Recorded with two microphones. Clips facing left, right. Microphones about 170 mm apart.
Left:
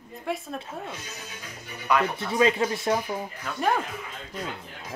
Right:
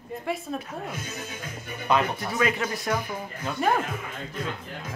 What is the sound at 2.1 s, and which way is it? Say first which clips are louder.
Speech: left 3 dB; 25° left (ahead or behind).